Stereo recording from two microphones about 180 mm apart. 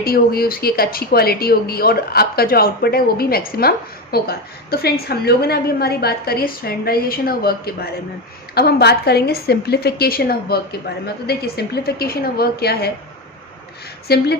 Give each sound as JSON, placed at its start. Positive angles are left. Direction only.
{"t": 0.0, "sound": "speech", "side_deg": 55}
{"t": 14.1, "sound": "speech", "side_deg": 65}